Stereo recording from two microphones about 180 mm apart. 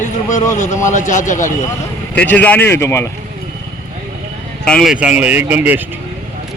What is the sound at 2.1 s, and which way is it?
Speech, 10° left (ahead or behind).